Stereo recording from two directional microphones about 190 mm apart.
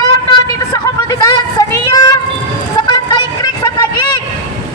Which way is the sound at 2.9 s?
20° left (ahead or behind).